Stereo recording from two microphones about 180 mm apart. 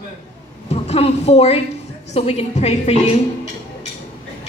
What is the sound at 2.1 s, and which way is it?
Music, 35° left (ahead or behind).